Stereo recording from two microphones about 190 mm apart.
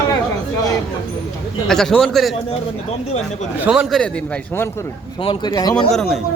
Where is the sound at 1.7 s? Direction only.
Centre (ahead or behind).